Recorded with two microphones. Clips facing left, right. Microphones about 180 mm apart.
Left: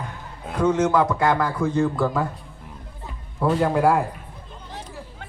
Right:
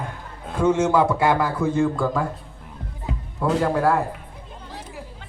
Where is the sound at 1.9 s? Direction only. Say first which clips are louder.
Even; 5° left (ahead or behind).